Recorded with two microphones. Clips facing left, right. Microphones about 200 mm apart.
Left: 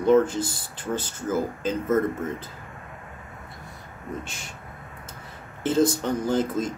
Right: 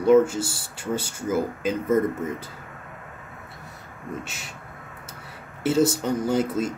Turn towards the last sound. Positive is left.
turn(degrees=-10)  # may be behind; listen again after turning